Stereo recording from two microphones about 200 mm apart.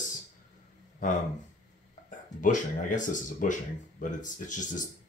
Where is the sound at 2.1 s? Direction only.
40° left (ahead or behind).